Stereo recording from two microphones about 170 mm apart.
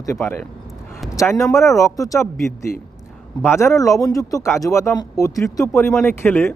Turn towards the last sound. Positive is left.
turn(degrees=10)  # may be behind; listen again after turning